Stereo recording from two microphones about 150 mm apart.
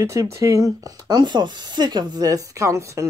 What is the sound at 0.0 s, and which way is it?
A woman's voice, 20° right (ahead or behind).